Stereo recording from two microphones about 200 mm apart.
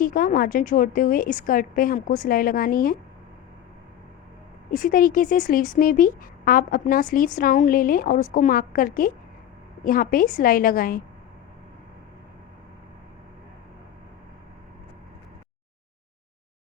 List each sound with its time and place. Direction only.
0.0 s a woman's voice: 45° left (ahead or behind)
4.7 s a woman's voice: 45° left (ahead or behind)